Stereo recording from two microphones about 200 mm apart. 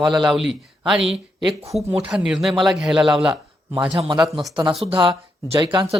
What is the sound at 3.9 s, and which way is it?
Speech, 20° right (ahead or behind).